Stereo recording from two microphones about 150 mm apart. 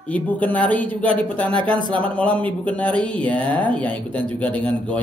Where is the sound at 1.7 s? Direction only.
30° right (ahead or behind).